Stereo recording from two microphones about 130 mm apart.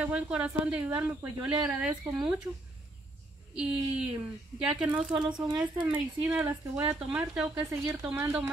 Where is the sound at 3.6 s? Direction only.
5° right (ahead or behind).